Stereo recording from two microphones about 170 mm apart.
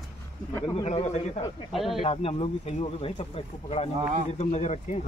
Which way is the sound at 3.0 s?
35° left (ahead or behind).